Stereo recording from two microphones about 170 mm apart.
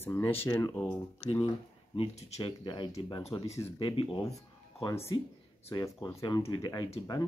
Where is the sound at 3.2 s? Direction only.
40° left (ahead or behind).